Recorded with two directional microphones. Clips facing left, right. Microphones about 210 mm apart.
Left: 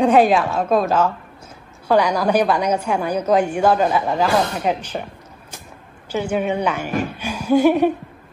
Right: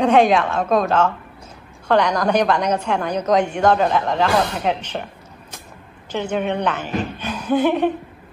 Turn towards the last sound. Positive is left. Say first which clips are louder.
# left 3 dB
turn(degrees=10)  # may be behind; listen again after turning